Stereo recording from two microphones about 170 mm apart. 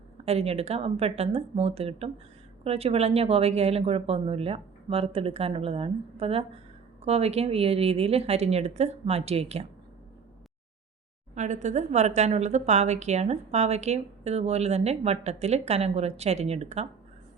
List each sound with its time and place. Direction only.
0.3 s a woman's voice: 35° right (ahead or behind)
11.3 s a woman's voice: 45° right (ahead or behind)